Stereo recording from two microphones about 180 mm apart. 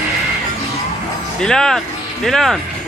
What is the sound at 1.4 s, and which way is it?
Speech, 5° left (ahead or behind).